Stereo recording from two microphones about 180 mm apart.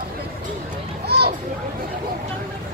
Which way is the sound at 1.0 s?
60° right (ahead or behind).